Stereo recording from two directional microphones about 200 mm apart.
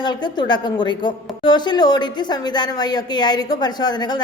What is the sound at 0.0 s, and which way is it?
Speech, 20° left (ahead or behind).